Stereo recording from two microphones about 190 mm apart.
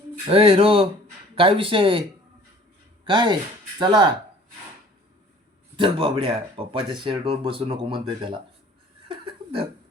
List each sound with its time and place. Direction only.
0.3 s speech: 30° right (ahead or behind)
3.1 s speech: 25° right (ahead or behind)
5.7 s speech: 25° right (ahead or behind)
9.0 s laughter: 30° right (ahead or behind)